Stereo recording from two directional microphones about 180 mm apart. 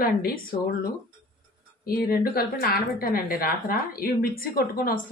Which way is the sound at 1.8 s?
55° left (ahead or behind).